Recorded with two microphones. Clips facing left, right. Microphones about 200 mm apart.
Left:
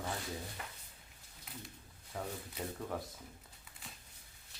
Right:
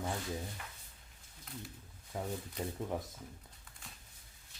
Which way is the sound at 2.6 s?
5° left (ahead or behind).